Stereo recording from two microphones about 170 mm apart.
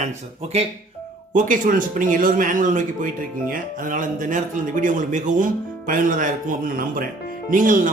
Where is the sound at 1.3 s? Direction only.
50° right (ahead or behind).